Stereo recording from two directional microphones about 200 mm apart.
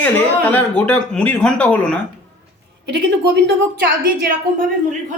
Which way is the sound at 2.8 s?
60° right (ahead or behind).